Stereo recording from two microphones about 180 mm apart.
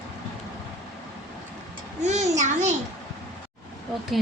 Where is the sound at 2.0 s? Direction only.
40° right (ahead or behind).